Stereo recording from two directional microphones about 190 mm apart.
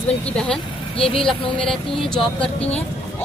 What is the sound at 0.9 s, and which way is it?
Speech, 30° left (ahead or behind).